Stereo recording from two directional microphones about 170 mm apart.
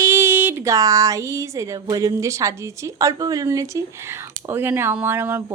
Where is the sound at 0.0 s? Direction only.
15° right (ahead or behind).